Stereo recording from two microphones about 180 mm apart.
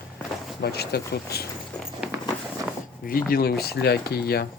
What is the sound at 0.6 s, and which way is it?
Speech, 65° left (ahead or behind).